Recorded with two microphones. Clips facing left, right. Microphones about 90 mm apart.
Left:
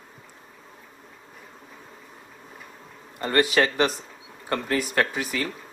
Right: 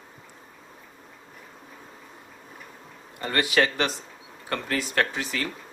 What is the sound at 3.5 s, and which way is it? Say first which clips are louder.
Speech: left 2 dB; 20° left (ahead or behind).